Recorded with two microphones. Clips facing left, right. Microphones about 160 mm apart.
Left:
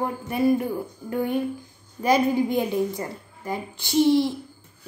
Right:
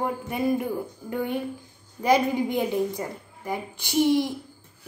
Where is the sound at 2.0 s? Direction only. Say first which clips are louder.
Left 1 dB; 20° right (ahead or behind).